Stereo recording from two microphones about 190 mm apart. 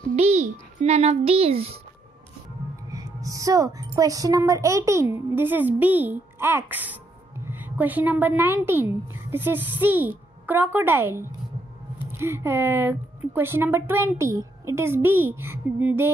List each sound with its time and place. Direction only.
0.1 s a child's voice: 35° right (ahead or behind)
2.9 s speech: 20° right (ahead or behind)